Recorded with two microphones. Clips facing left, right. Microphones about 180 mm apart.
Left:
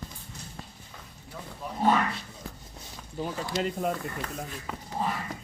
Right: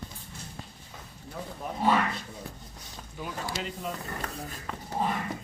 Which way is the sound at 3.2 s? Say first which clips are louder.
Left 5 dB; 45° left (ahead or behind).